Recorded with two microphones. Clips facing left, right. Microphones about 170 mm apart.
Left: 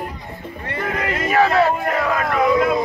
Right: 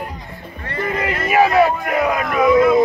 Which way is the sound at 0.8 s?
5° right (ahead or behind).